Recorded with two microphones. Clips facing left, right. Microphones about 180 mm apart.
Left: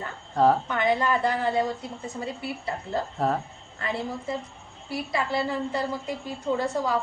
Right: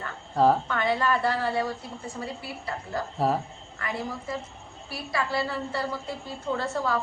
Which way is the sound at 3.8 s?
25° left (ahead or behind).